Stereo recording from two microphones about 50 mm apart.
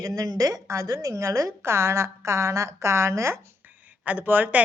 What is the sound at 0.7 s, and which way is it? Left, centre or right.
A woman's voice, right.